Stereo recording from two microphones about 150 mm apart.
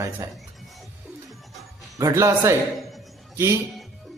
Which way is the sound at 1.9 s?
20° right (ahead or behind).